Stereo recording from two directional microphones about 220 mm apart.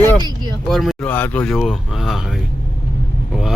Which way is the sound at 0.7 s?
Centre (ahead or behind).